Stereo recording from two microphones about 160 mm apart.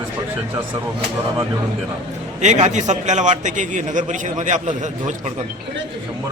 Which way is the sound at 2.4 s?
45° right (ahead or behind).